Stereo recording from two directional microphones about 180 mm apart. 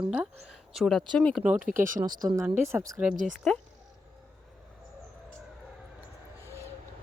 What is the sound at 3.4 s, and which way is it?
Speech, centre (ahead or behind).